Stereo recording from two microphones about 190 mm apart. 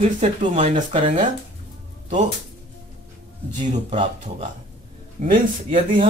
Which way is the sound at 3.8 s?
35° right (ahead or behind).